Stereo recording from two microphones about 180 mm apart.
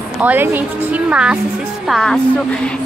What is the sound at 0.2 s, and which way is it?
A woman's voice, 10° right (ahead or behind).